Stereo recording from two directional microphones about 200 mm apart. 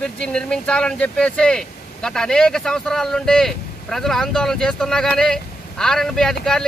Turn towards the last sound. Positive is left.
turn(degrees=0)  # may be behind; listen again after turning